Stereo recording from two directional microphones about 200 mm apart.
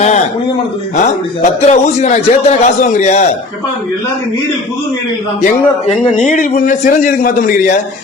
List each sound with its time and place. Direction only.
1.0 s a man's voice: 35° left (ahead or behind)
6.2 s a man's voice: 40° left (ahead or behind)